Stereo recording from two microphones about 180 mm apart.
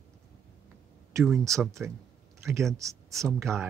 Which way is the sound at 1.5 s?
Centre (ahead or behind).